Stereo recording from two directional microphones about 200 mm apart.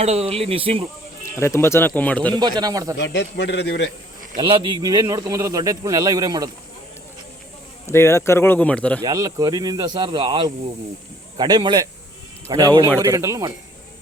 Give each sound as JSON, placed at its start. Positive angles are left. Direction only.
{"t": 0.0, "sound": "speech", "side_deg": -30}
{"t": 1.2, "sound": "speech", "side_deg": 15}
{"t": 2.3, "sound": "speech", "side_deg": -20}
{"t": 3.0, "sound": "a man's voice", "side_deg": 60}
{"t": 4.4, "sound": "speech", "side_deg": -25}
{"t": 7.9, "sound": "speech", "side_deg": 15}
{"t": 9.0, "sound": "speech", "side_deg": -20}